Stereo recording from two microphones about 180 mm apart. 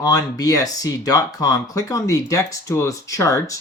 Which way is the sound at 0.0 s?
20° left (ahead or behind).